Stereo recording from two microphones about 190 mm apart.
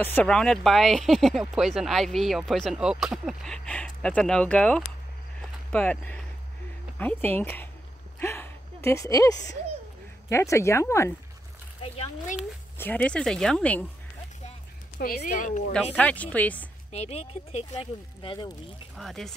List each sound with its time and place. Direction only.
0.0 s speech: 5° left (ahead or behind)
8.2 s a sound: 15° left (ahead or behind)
10.3 s speech: 15° left (ahead or behind)
11.8 s speech: 30° left (ahead or behind)
12.7 s speech: 10° left (ahead or behind)
15.0 s speech: 45° left (ahead or behind)
15.7 s speech: 5° left (ahead or behind)
16.9 s speech: 35° left (ahead or behind)
18.9 s speech: centre (ahead or behind)